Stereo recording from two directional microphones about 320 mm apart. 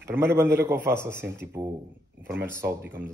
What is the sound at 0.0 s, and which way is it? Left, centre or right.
A man's voice, centre.